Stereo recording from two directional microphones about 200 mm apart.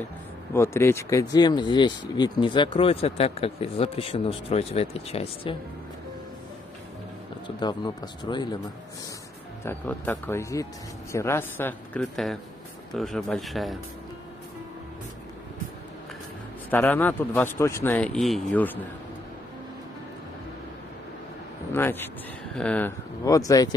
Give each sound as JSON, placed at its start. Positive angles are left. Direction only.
{"t": 0.5, "sound": "speech", "side_deg": 15}
{"t": 7.4, "sound": "speech", "side_deg": 20}
{"t": 9.7, "sound": "speech", "side_deg": 10}
{"t": 16.7, "sound": "speech", "side_deg": 10}
{"t": 21.7, "sound": "speech", "side_deg": 10}